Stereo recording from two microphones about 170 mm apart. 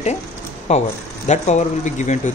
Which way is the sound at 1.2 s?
45° left (ahead or behind).